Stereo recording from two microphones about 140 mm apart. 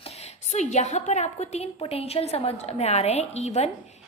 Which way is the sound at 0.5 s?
55° left (ahead or behind).